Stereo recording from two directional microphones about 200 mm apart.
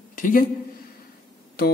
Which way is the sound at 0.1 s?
45° left (ahead or behind).